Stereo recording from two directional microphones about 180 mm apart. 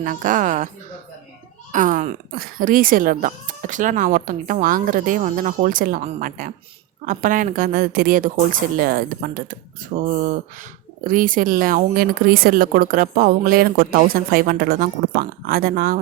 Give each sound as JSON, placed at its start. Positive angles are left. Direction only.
{"t": 0.0, "sound": "speech", "side_deg": -50}
{"t": 1.7, "sound": "speech", "side_deg": -45}
{"t": 11.1, "sound": "speech", "side_deg": -50}